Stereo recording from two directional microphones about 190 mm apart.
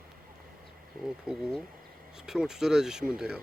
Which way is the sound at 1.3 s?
5° right (ahead or behind).